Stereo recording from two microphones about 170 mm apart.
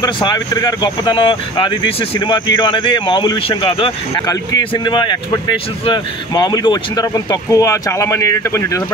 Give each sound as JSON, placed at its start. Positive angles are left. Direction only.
{"t": 0.0, "sound": "speech", "side_deg": 25}